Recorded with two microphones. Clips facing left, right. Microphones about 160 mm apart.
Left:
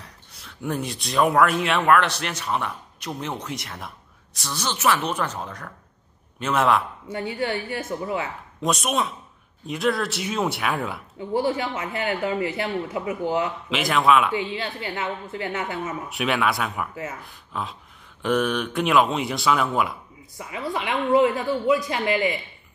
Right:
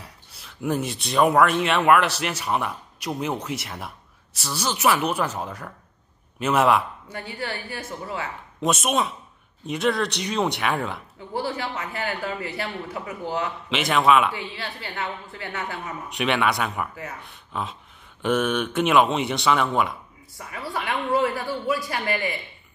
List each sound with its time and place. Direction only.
0.0 s a man's voice: 5° right (ahead or behind)
7.1 s a man's voice: 20° left (ahead or behind)
8.5 s speech: centre (ahead or behind)
11.3 s a man's voice: 20° left (ahead or behind)
13.7 s speech: centre (ahead or behind)
14.3 s a man's voice: 20° left (ahead or behind)
16.1 s speech: centre (ahead or behind)
20.3 s a man's voice: 20° left (ahead or behind)